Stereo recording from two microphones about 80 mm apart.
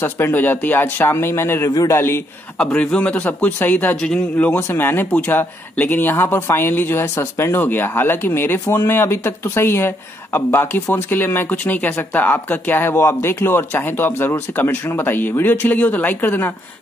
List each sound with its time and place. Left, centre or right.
0.0 s a man's voice: left
2.6 s a man's voice: centre
4.6 s speech: left